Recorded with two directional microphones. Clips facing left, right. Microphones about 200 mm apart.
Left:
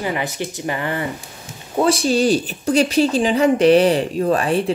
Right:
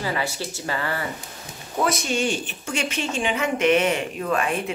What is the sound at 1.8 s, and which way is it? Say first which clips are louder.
Speech: left 7 dB; 30° left (ahead or behind).